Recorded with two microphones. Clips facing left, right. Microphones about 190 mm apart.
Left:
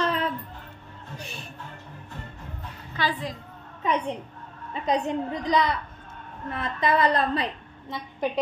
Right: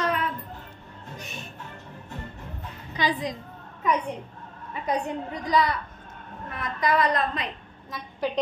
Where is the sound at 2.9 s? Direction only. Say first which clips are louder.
Right 2 dB; 15° right (ahead or behind).